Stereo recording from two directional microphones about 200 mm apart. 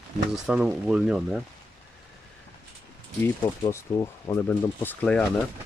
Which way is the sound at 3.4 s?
15° left (ahead or behind).